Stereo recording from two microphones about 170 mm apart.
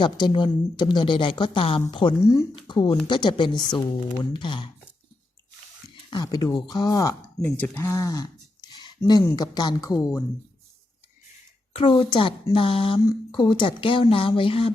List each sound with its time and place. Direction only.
0.0 s a woman's voice: 25° left (ahead or behind)
6.1 s speech: 25° left (ahead or behind)
11.7 s a woman's voice: 35° left (ahead or behind)